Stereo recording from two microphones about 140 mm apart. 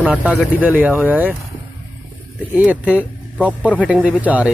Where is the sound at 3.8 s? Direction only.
10° right (ahead or behind).